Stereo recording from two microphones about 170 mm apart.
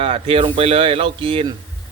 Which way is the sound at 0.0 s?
35° right (ahead or behind).